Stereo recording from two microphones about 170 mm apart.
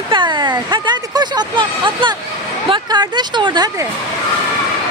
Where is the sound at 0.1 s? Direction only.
25° right (ahead or behind).